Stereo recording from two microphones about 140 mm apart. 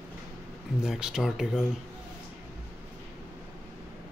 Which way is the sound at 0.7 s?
5° right (ahead or behind).